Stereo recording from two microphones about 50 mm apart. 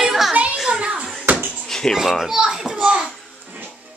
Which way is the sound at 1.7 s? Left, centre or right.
Centre.